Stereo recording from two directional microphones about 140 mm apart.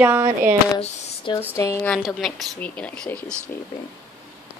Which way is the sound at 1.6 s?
20° left (ahead or behind).